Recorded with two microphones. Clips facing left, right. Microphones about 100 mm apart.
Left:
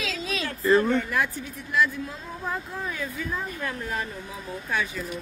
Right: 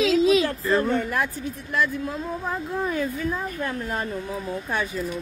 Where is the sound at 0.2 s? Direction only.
20° right (ahead or behind).